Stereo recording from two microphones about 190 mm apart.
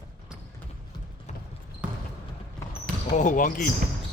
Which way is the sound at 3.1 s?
40° left (ahead or behind).